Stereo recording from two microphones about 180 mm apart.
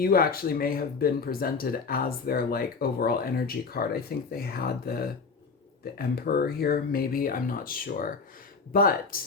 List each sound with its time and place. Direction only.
0.0 s speech: 55° left (ahead or behind)